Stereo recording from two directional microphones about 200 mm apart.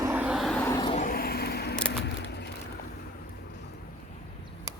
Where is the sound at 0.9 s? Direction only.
45° left (ahead or behind).